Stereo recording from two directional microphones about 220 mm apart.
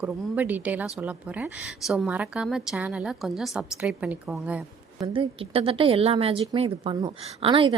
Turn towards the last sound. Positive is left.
turn(degrees=-25)  # may be behind; listen again after turning